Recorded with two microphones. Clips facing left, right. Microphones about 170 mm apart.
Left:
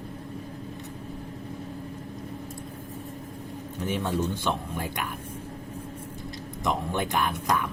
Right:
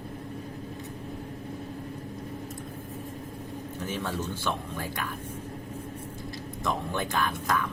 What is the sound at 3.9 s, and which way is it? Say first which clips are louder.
Speech: left 6 dB; 20° left (ahead or behind).